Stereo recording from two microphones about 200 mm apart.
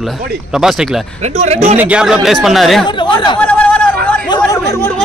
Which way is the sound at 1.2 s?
35° right (ahead or behind).